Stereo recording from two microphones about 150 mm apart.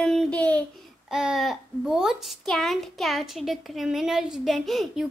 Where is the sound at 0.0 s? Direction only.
5° left (ahead or behind).